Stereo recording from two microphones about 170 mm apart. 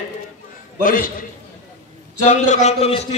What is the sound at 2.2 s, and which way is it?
Speech, 45° left (ahead or behind).